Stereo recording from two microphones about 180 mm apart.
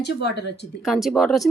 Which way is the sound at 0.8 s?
Centre (ahead or behind).